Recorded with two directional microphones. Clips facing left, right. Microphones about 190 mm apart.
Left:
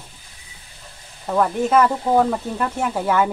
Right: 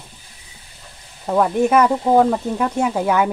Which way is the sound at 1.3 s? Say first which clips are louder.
Right 2 dB; 10° right (ahead or behind).